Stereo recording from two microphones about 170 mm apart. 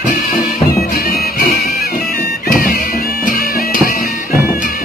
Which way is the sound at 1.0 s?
65° left (ahead or behind).